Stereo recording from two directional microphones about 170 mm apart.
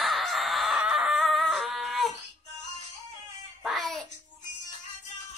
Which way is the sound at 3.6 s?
Centre (ahead or behind).